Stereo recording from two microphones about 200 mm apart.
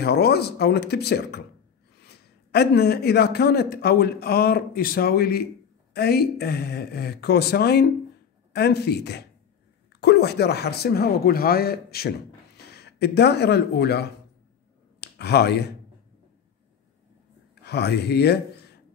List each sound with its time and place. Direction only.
0.0 s a man's voice: 55° left (ahead or behind)
17.6 s speech: 55° left (ahead or behind)